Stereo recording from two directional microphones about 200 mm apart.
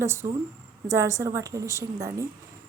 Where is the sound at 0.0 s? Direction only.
15° right (ahead or behind).